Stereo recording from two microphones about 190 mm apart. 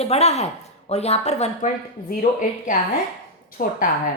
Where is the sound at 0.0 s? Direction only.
35° left (ahead or behind).